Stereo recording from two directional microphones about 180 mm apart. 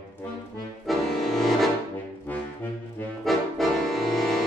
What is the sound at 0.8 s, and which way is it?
Accordion, centre (ahead or behind).